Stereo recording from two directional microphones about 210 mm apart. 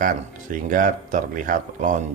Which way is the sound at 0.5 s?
40° right (ahead or behind).